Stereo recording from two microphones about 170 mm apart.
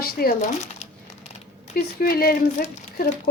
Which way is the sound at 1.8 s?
65° left (ahead or behind).